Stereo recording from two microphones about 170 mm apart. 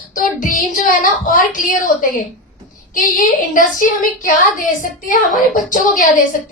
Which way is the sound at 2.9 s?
50° left (ahead or behind).